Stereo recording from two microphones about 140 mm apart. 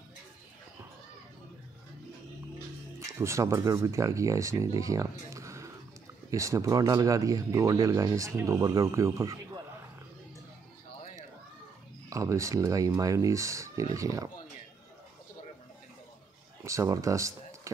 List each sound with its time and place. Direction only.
3.1 s speech: 20° right (ahead or behind)
12.1 s speech: 20° right (ahead or behind)
16.6 s speech: 25° right (ahead or behind)